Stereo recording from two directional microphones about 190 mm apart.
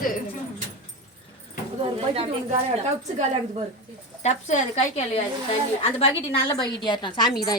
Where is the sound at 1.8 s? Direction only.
30° right (ahead or behind).